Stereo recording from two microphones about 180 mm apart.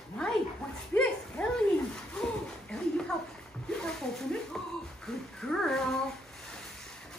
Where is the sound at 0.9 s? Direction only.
10° left (ahead or behind).